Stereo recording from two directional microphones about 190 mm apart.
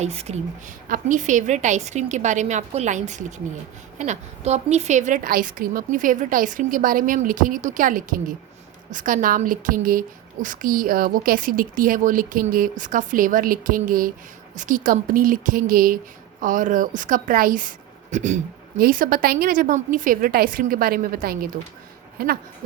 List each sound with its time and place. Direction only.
0.0 s a woman's voice: 35° right (ahead or behind)
0.9 s a woman's voice: 45° right (ahead or behind)